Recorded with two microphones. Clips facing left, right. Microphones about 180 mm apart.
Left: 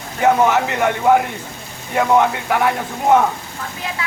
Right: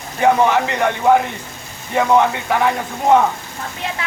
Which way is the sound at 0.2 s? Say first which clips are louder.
Even; 5° left (ahead or behind).